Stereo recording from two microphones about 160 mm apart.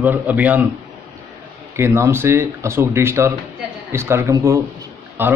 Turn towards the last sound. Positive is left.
turn(degrees=-15)  # may be behind; listen again after turning